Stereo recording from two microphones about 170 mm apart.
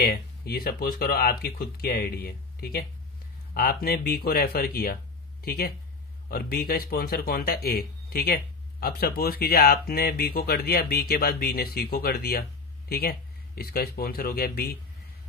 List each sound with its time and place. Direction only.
0.0 s a man's voice: 65° left (ahead or behind)